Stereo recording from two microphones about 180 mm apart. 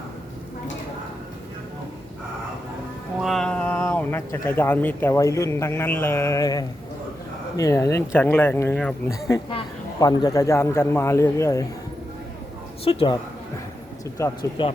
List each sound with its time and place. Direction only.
3.2 s speech: centre (ahead or behind); by 11.6 s 15° left (ahead or behind)
12.8 s a woman's voice: 30° left (ahead or behind)
14.2 s speech: 20° left (ahead or behind)